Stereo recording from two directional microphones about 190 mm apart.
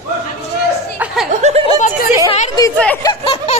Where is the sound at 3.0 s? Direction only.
25° left (ahead or behind).